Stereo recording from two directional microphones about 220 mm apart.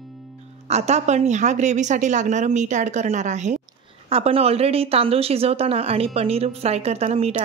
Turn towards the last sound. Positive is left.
turn(degrees=-30)  # may be behind; listen again after turning